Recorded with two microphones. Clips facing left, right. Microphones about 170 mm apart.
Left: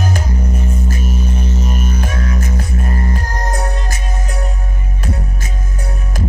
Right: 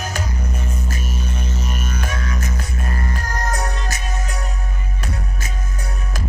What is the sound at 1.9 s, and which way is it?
Music, 30° left (ahead or behind).